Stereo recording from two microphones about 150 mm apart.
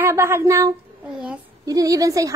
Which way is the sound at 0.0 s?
15° right (ahead or behind).